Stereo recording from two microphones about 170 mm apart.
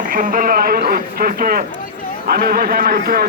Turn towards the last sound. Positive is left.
turn(degrees=-60)  # may be behind; listen again after turning